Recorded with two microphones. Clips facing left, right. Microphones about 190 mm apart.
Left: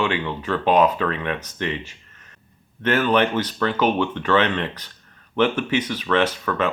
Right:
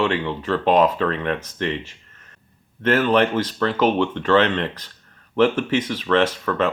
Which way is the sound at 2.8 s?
30° right (ahead or behind).